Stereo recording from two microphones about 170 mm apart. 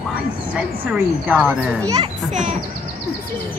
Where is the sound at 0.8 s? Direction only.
10° right (ahead or behind).